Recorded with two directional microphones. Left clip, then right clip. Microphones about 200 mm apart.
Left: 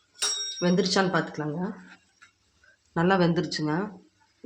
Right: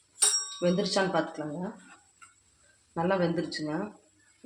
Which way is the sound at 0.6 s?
40° left (ahead or behind).